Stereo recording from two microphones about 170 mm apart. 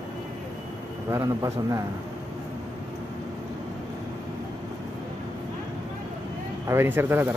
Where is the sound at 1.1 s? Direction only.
20° right (ahead or behind).